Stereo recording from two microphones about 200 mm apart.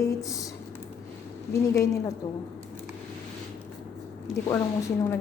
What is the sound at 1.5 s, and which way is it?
Speech, 15° left (ahead or behind).